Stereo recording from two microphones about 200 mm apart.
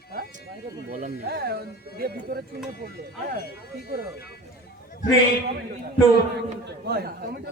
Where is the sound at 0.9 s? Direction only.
45° right (ahead or behind).